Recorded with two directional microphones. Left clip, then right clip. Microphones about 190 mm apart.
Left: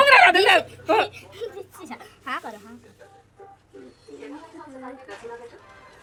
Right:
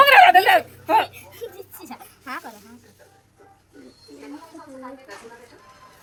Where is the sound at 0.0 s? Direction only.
10° right (ahead or behind).